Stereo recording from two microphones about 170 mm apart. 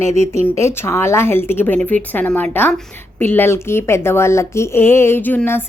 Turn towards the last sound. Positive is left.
turn(degrees=10)  # may be behind; listen again after turning